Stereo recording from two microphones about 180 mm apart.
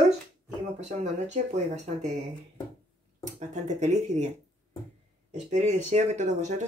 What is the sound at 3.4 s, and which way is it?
Speech, 40° right (ahead or behind).